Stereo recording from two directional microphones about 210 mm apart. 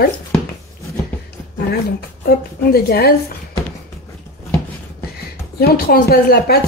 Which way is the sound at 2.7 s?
45° left (ahead or behind).